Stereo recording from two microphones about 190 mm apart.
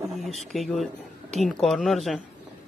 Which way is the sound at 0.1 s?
Centre (ahead or behind).